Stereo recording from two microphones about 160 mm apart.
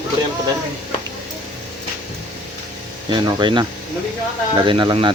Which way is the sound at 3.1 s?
30° right (ahead or behind).